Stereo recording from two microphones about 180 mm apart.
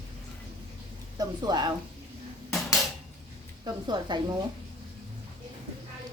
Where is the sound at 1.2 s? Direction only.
20° right (ahead or behind).